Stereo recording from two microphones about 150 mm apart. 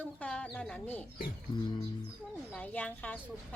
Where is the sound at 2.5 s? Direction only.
10° left (ahead or behind).